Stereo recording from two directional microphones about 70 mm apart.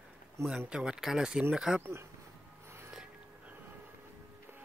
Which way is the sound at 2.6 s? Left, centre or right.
Right.